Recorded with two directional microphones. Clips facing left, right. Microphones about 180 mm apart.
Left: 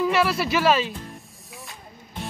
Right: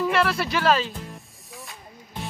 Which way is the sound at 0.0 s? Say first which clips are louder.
Left 1 dB; centre (ahead or behind).